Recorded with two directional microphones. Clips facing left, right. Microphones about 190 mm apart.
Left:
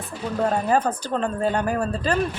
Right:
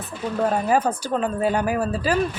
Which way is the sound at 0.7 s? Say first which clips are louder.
Right 1 dB; 10° right (ahead or behind).